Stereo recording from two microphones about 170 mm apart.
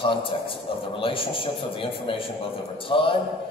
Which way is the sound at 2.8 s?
30° left (ahead or behind).